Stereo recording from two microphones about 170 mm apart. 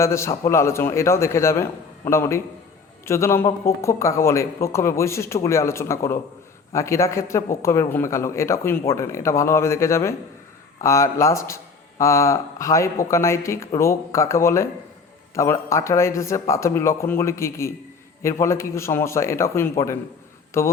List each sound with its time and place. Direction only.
0.0 s speech: 15° left (ahead or behind)